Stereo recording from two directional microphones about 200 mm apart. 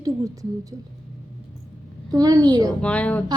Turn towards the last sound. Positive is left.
turn(degrees=5)  # may be behind; listen again after turning